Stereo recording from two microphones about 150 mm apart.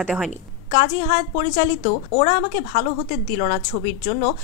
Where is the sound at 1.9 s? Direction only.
90° left.